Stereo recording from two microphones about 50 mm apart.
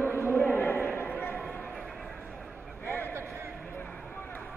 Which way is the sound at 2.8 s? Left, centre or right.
Left.